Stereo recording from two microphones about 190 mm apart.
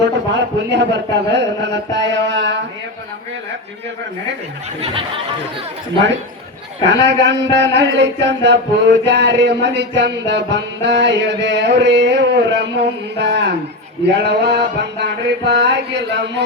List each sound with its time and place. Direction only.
0.7 s speech: 65° right (ahead or behind)
4.8 s a sound: 30° right (ahead or behind)
6.8 s a man's voice: 65° right (ahead or behind)